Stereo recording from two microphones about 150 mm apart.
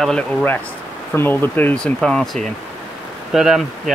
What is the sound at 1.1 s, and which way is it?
Speech, 15° left (ahead or behind).